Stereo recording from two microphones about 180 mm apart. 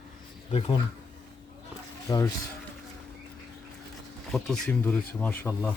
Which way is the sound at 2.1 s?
20° left (ahead or behind).